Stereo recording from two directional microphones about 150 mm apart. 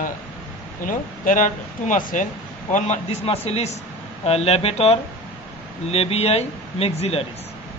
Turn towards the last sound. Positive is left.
turn(degrees=40)  # may be behind; listen again after turning